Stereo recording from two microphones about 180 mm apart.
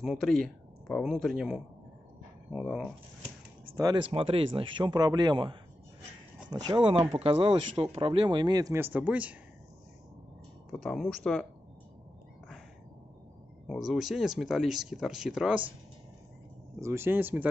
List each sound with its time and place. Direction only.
0.0 s speech: centre (ahead or behind)
3.7 s speech: 20° right (ahead or behind)
10.7 s speech: centre (ahead or behind)
13.7 s speech: centre (ahead or behind)
16.8 s speech: 15° right (ahead or behind)